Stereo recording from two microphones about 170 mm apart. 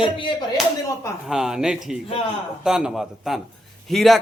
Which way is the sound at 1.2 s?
Centre (ahead or behind).